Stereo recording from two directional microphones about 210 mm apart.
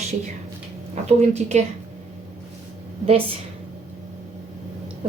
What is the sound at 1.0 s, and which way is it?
Speech, 30° right (ahead or behind).